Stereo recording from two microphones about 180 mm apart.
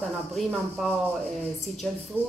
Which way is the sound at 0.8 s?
Centre (ahead or behind).